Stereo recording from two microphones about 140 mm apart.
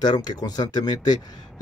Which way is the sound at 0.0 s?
30° left (ahead or behind).